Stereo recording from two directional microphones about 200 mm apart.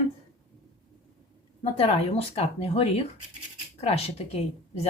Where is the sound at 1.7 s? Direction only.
30° left (ahead or behind).